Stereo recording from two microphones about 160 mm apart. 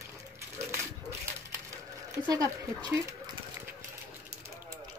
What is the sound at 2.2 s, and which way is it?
Speech, 20° right (ahead or behind).